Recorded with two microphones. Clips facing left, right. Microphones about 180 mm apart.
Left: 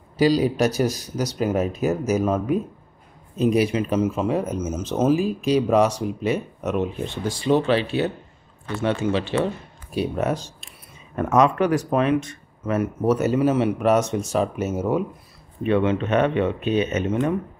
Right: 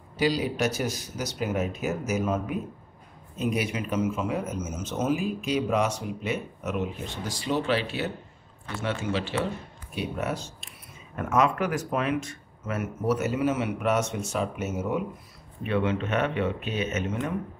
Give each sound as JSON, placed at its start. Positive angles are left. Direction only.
{"t": 0.2, "sound": "speech", "side_deg": 35}
{"t": 3.3, "sound": "speech", "side_deg": 30}
{"t": 9.9, "sound": "speech", "side_deg": 35}